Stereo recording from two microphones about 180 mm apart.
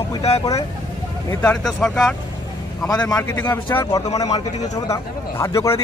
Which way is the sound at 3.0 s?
20° left (ahead or behind).